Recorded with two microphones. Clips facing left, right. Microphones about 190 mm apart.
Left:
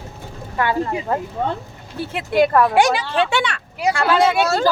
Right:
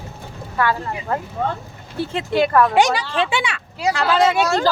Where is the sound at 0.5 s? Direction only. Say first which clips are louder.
Left 1 dB; 20° left (ahead or behind).